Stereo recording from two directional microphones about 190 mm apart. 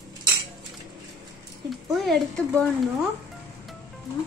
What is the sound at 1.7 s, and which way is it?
A child's voice, centre (ahead or behind).